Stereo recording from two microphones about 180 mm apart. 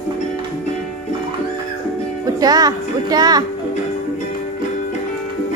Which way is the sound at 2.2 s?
20° right (ahead or behind).